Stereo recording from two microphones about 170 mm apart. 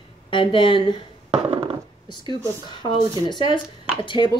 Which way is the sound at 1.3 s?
35° right (ahead or behind).